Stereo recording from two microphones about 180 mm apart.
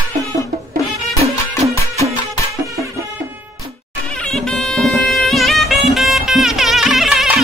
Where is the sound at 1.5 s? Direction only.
15° left (ahead or behind).